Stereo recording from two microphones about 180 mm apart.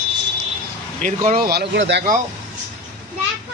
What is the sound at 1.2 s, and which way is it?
Speech, 55° right (ahead or behind).